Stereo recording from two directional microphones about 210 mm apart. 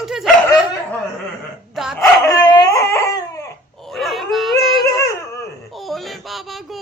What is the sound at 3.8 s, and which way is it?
Dog, centre (ahead or behind).